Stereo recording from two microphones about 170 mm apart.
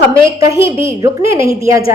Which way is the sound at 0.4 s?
15° right (ahead or behind).